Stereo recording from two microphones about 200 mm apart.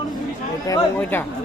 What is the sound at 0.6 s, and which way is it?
Speech, 15° left (ahead or behind).